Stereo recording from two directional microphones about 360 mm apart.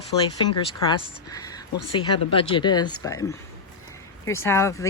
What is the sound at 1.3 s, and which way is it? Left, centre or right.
Speech, centre.